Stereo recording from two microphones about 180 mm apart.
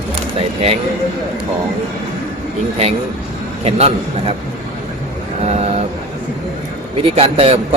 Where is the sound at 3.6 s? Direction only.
35° right (ahead or behind).